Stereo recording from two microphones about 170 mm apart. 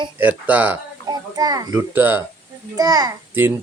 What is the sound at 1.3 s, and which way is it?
Speech, 20° right (ahead or behind).